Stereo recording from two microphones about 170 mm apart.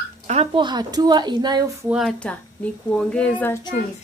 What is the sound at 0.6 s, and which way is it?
A woman's voice, 25° right (ahead or behind).